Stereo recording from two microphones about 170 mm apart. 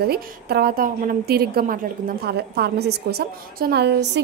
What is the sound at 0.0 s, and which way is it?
A woman's voice, 70° right (ahead or behind).